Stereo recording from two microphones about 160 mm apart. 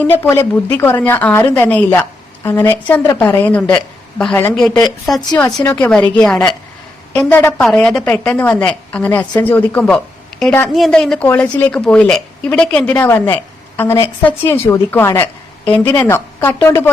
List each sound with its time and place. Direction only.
0.1 s a woman's voice: 15° left (ahead or behind)
5.4 s speech: 20° left (ahead or behind)
5.7 s a woman's voice: 10° left (ahead or behind)